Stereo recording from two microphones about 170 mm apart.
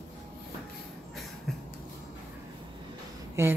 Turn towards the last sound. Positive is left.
turn(degrees=-15)  # may be behind; listen again after turning